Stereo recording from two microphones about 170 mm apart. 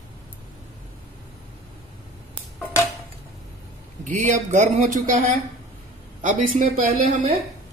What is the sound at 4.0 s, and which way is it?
Speech, 50° right (ahead or behind).